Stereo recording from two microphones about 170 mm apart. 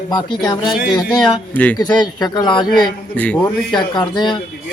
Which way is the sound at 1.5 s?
10° left (ahead or behind).